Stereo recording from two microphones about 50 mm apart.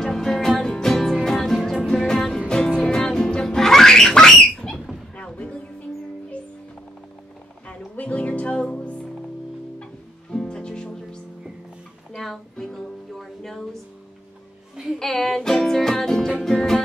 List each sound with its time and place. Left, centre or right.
0.0 s music: centre
5.3 s music: left
7.6 s speech: left
10.3 s music: centre
12.2 s music: centre
15.0 s music: centre